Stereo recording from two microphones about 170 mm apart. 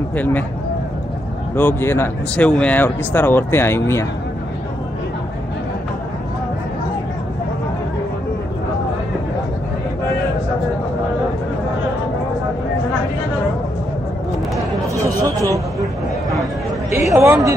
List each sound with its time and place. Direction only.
0.1 s speech: 10° left (ahead or behind)
1.5 s speech: 10° left (ahead or behind)
15.2 s a sound: 20° right (ahead or behind)
17.1 s speech: 15° right (ahead or behind)